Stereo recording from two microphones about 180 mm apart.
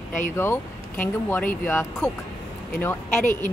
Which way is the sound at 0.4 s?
10° left (ahead or behind).